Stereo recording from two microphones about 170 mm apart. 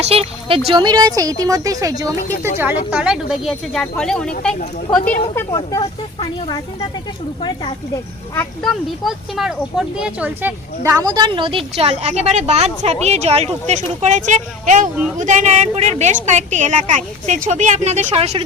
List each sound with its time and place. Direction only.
0.0 s speech: 35° right (ahead or behind); by 2.5 s 20° right (ahead or behind)
2.6 s speech: 10° right (ahead or behind); by 5.5 s 15° left (ahead or behind)
5.5 s speech: 30° left (ahead or behind)
8.6 s a woman's voice: centre (ahead or behind); by 18.4 s 35° right (ahead or behind)